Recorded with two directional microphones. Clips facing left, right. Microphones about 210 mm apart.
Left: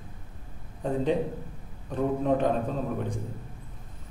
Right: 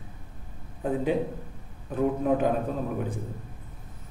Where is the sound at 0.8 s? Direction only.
5° right (ahead or behind).